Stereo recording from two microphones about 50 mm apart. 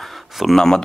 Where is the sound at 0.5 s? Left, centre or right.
Centre.